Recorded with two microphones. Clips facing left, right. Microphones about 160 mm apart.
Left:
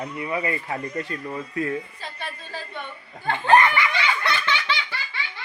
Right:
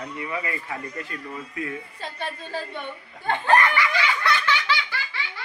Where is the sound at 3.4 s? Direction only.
25° left (ahead or behind).